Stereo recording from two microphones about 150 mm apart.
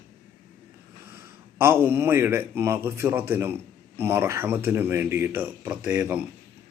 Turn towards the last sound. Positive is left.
turn(degrees=-10)  # may be behind; listen again after turning